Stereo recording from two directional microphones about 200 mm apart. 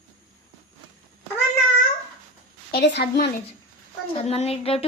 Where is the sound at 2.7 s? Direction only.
55° left (ahead or behind).